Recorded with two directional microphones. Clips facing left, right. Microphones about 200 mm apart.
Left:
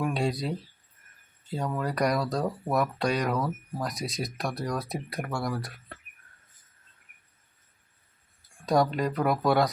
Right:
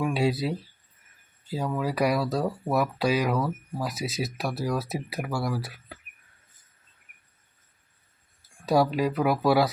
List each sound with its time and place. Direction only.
0.0 s speech: 5° right (ahead or behind)
8.4 s speech: 5° right (ahead or behind)